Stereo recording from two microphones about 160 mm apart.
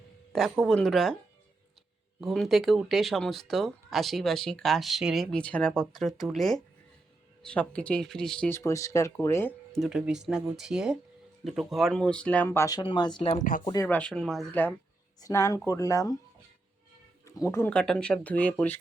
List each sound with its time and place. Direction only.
0.6 s speech: 5° left (ahead or behind)
2.2 s speech: centre (ahead or behind)
9.7 s speech: centre (ahead or behind); by 13.4 s 35° left (ahead or behind)
13.8 s speech: 10° left (ahead or behind)
15.2 s speech: 20° left (ahead or behind)
17.2 s speech: 20° left (ahead or behind)